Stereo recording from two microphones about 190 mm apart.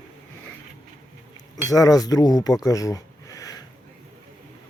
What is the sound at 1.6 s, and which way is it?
Speech, 20° left (ahead or behind).